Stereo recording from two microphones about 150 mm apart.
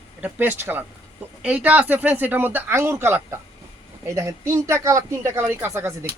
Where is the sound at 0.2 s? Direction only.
15° right (ahead or behind).